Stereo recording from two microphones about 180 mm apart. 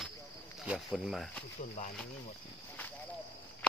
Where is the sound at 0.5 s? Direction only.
Centre (ahead or behind).